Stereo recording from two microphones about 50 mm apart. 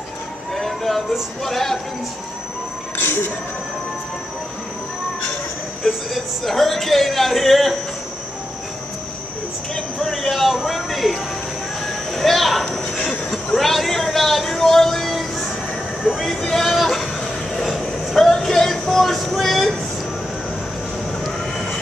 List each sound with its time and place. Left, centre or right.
0.6 s music: centre
3.0 s speech: left
6.1 s music: centre
9.8 s music: centre
12.1 s a sound: centre
13.6 s music: centre
16.6 s a sound: centre
17.7 s vehicle: centre